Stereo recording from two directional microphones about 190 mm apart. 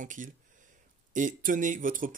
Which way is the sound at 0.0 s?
45° right (ahead or behind).